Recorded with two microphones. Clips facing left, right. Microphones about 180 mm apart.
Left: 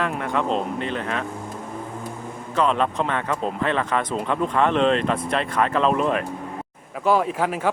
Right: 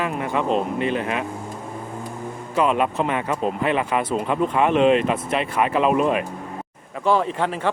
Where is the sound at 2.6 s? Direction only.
10° right (ahead or behind).